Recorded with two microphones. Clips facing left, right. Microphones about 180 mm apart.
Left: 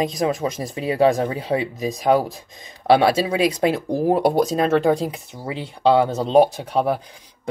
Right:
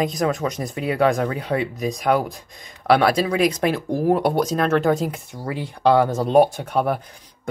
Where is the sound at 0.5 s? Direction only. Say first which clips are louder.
Left 1 dB; 30° left (ahead or behind).